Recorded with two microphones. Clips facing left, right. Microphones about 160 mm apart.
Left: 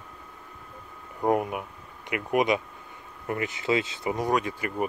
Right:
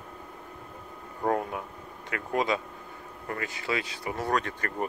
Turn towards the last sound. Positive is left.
turn(degrees=10)  # may be behind; listen again after turning